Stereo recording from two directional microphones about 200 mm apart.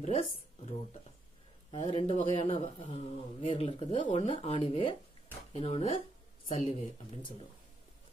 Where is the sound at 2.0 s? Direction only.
25° left (ahead or behind).